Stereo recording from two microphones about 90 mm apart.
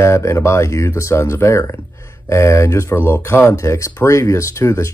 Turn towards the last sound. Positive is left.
turn(degrees=35)  # may be behind; listen again after turning